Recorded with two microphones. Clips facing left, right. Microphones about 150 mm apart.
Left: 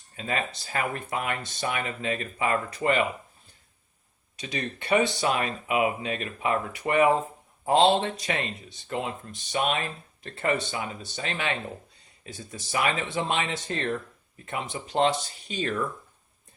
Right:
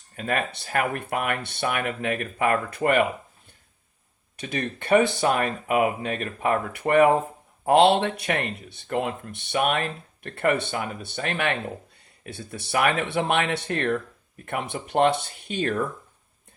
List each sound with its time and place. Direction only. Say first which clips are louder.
0.2 s speech: right 4 dB; 55° right (ahead or behind)
4.4 s speech: right 3 dB; 55° right (ahead or behind)